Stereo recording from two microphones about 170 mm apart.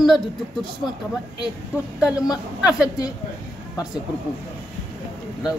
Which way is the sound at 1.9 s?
5° right (ahead or behind).